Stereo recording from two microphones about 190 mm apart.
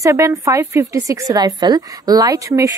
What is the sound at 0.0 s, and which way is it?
A woman's voice, 15° right (ahead or behind).